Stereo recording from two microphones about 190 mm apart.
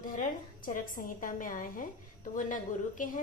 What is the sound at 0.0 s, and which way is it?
A woman's voice, 45° left (ahead or behind).